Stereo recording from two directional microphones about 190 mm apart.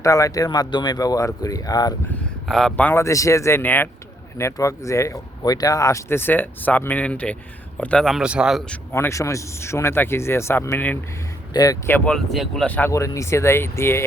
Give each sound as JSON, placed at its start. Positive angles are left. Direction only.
{"t": 0.0, "sound": "speech", "side_deg": 15}
{"t": 2.0, "sound": "speech", "side_deg": 0}
{"t": 8.9, "sound": "speech", "side_deg": 15}